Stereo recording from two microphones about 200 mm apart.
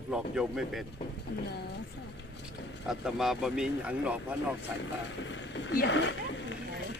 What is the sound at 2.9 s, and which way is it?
Speech, centre (ahead or behind).